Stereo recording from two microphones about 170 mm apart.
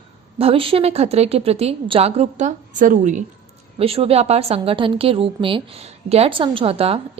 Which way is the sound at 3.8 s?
35° right (ahead or behind).